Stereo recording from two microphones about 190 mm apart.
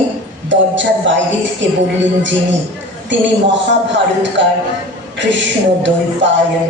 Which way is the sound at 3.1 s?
70° right (ahead or behind).